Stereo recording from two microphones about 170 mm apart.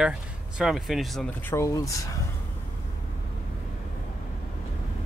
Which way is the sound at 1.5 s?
15° left (ahead or behind).